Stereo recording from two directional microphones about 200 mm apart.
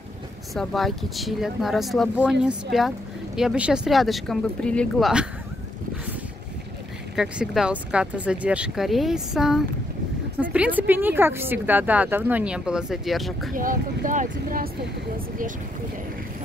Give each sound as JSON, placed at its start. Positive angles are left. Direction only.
{"t": 0.6, "sound": "speech", "side_deg": 0}
{"t": 7.2, "sound": "speech", "side_deg": -5}
{"t": 13.6, "sound": "speech", "side_deg": -40}